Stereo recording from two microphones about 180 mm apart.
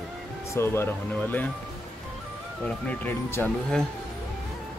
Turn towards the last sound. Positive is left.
turn(degrees=5)  # may be behind; listen again after turning